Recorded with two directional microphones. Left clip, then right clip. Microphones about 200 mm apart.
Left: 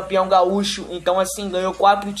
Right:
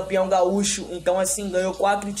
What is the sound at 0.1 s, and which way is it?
Speech, 5° right (ahead or behind).